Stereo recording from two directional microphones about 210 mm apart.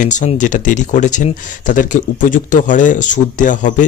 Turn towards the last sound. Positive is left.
turn(degrees=35)  # may be behind; listen again after turning